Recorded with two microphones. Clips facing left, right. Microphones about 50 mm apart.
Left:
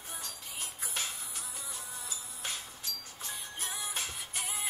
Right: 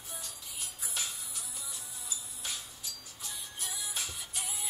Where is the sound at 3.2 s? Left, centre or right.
Left.